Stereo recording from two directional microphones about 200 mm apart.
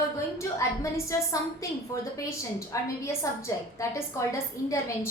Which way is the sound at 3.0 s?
15° left (ahead or behind).